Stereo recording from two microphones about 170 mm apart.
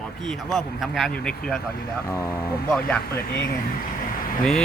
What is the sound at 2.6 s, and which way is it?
Speech, 5° left (ahead or behind).